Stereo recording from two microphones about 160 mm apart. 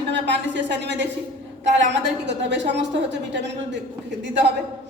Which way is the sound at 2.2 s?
90° right.